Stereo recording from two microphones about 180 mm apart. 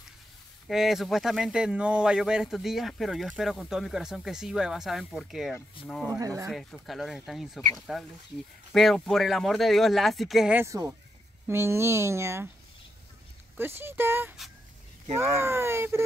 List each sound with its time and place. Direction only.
0.7 s speech: centre (ahead or behind)
6.0 s speech: 20° right (ahead or behind)
6.5 s speech: centre (ahead or behind)
13.6 s speech: 15° right (ahead or behind)